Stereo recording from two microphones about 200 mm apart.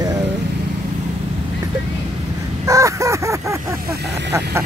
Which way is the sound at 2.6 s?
15° right (ahead or behind).